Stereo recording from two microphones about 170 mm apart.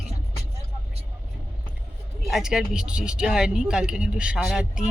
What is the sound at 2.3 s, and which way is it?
Speech, 5° right (ahead or behind).